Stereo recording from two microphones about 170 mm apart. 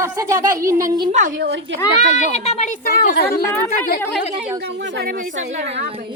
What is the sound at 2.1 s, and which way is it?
Speech, 40° left (ahead or behind).